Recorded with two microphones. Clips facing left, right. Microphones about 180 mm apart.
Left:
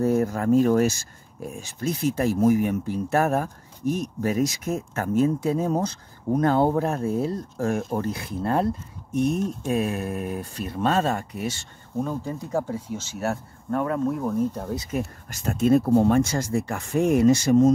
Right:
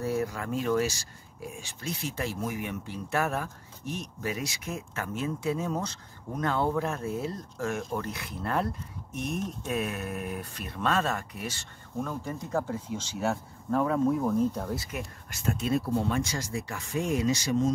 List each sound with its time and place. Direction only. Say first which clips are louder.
0.0 s speech: left 8 dB; 45° left (ahead or behind); by 15.0 s 20° left (ahead or behind)
15.0 s speech: left 9 dB; 40° left (ahead or behind)